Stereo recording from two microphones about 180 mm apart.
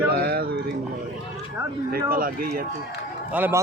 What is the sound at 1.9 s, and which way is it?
Speech, 55° right (ahead or behind).